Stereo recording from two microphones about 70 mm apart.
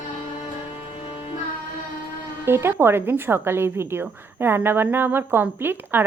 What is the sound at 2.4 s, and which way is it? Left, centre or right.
Speech, right.